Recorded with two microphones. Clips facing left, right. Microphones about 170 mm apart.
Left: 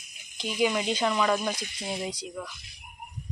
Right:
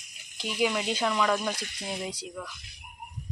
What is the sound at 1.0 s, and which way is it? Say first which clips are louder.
Speech: left 1 dB; 5° left (ahead or behind).